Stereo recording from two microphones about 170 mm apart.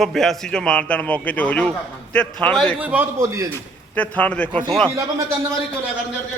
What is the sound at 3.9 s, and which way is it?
Speech, 10° left (ahead or behind).